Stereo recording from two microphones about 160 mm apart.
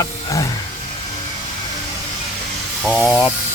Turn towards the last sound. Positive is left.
turn(degrees=-5)  # may be behind; listen again after turning